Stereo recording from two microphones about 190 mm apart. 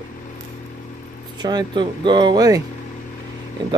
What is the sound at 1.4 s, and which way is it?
Speech, 20° right (ahead or behind).